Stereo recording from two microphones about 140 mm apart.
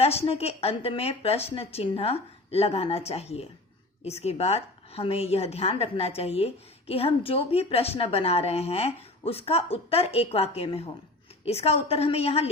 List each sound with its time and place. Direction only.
0.0 s a woman's voice: 45° left (ahead or behind)